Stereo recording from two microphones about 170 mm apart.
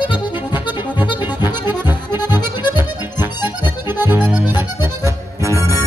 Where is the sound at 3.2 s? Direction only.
10° right (ahead or behind).